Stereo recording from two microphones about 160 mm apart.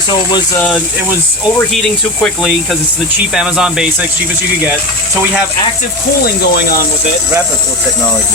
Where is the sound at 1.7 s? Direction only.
Centre (ahead or behind).